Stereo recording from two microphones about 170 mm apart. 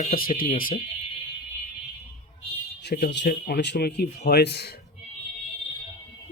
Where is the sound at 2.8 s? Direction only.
70° left (ahead or behind).